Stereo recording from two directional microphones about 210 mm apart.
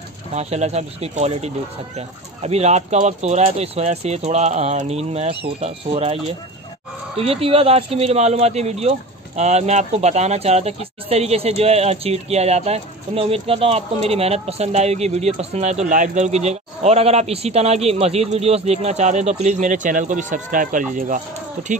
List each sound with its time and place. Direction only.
0.3 s speech: 30° right (ahead or behind)